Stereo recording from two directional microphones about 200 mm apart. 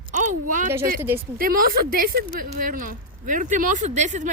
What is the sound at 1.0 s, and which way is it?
Speech, 10° right (ahead or behind).